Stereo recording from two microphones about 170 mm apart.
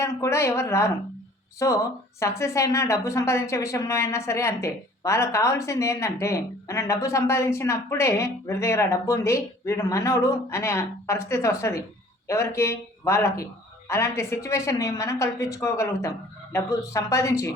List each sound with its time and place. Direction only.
0.0 s speech: 15° left (ahead or behind)